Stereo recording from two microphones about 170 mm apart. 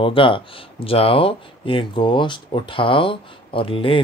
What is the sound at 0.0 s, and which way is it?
Speech, 30° left (ahead or behind).